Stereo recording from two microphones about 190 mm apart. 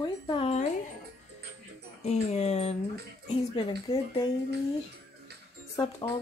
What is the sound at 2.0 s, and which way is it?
Speech, 35° left (ahead or behind).